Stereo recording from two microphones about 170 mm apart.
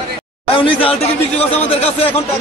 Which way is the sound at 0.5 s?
30° left (ahead or behind).